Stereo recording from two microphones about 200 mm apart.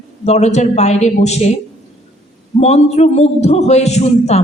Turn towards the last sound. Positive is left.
turn(degrees=35)  # may be behind; listen again after turning